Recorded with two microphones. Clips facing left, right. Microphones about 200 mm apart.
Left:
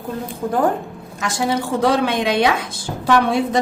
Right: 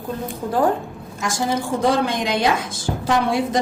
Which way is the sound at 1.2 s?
65° left (ahead or behind).